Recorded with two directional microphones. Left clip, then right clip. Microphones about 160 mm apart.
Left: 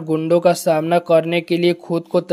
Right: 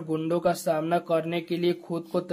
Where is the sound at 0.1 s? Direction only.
30° left (ahead or behind).